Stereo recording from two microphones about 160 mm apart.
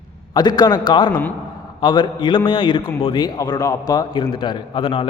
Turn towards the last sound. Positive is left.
turn(degrees=30)  # may be behind; listen again after turning